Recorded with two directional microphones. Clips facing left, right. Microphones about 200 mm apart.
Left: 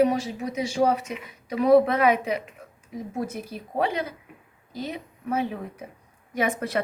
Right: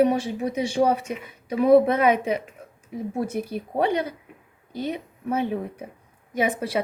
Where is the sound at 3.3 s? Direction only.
60° right (ahead or behind).